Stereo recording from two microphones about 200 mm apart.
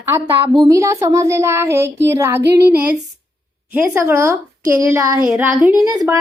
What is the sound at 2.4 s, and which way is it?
Female singing, 55° right (ahead or behind).